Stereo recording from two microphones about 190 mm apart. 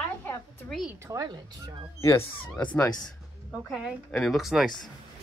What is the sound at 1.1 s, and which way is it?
Speech, 20° right (ahead or behind).